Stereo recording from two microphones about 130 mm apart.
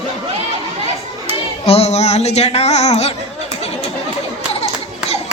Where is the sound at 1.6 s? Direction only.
50° left (ahead or behind).